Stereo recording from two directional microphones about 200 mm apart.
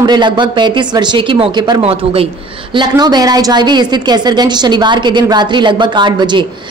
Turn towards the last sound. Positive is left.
turn(degrees=-20)  # may be behind; listen again after turning